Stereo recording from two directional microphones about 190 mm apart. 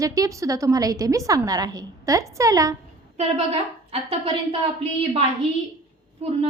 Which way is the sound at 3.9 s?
30° right (ahead or behind).